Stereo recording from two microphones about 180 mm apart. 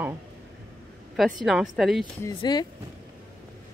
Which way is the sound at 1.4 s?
Centre (ahead or behind).